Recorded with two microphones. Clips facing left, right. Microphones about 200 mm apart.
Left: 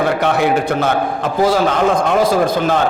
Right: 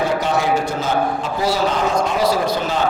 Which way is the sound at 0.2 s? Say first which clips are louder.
Left 4 dB; 60° left (ahead or behind).